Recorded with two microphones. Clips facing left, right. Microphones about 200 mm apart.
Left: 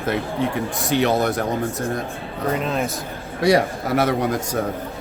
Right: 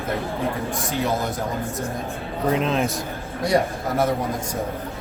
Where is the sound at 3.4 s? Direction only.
80° left.